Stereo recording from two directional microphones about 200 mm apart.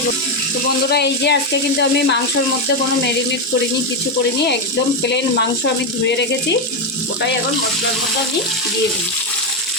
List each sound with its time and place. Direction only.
0.9 s speech: 55° left (ahead or behind)
6.1 s speech: 60° left (ahead or behind)